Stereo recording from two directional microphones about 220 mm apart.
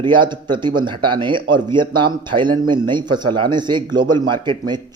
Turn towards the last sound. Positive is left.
turn(degrees=-20)  # may be behind; listen again after turning